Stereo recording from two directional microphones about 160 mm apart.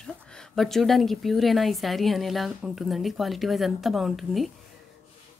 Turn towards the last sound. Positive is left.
turn(degrees=0)  # may be behind; listen again after turning